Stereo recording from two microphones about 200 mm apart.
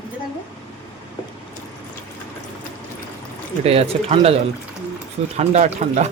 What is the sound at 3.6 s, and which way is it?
Speech, 30° right (ahead or behind).